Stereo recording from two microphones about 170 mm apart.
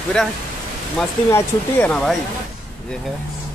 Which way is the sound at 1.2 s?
15° left (ahead or behind).